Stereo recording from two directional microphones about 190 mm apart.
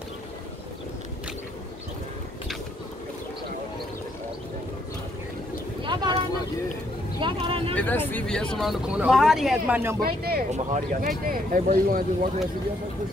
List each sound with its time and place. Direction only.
5.9 s a sound: 25° right (ahead or behind)
7.2 s speech: 25° right (ahead or behind)
7.7 s speech: 10° left (ahead or behind); by 9.9 s 10° right (ahead or behind)
10.0 s speech: 55° right (ahead or behind)
10.5 s speech: 40° right (ahead or behind)